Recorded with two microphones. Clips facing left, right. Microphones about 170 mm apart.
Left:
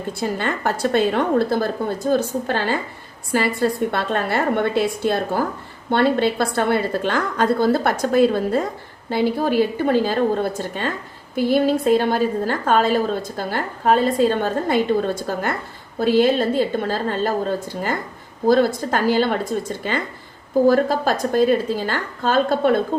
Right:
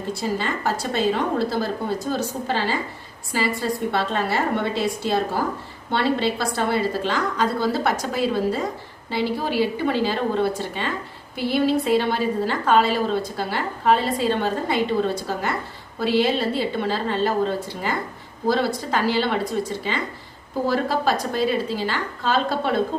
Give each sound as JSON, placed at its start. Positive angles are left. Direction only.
{"t": 0.1, "sound": "a woman's voice", "side_deg": 55}